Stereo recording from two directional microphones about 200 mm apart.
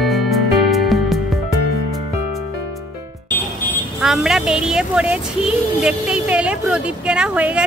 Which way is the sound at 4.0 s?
Centre (ahead or behind).